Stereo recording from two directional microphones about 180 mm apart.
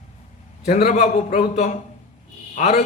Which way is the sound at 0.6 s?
35° left (ahead or behind).